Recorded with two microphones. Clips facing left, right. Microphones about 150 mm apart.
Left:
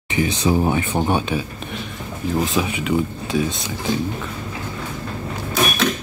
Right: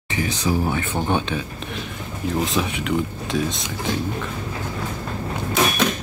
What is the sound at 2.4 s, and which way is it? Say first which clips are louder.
Speech: left 2 dB; centre (ahead or behind).